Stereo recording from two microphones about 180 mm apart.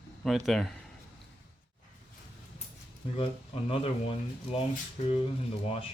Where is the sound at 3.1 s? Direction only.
30° left (ahead or behind).